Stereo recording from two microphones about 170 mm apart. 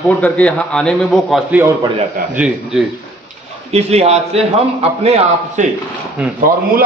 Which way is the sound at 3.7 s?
40° right (ahead or behind).